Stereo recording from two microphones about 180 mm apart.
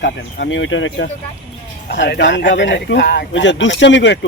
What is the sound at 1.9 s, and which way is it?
Speech, 70° left (ahead or behind).